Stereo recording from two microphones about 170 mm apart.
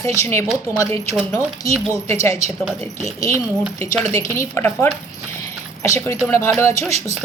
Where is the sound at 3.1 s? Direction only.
15° left (ahead or behind).